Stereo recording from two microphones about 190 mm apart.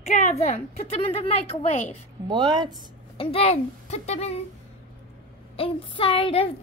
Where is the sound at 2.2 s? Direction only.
20° right (ahead or behind).